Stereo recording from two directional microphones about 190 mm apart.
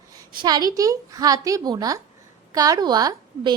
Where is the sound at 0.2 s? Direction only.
20° right (ahead or behind).